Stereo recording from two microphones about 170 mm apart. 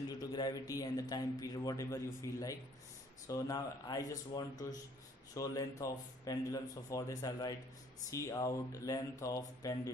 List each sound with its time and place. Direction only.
0.2 s speech: 25° left (ahead or behind)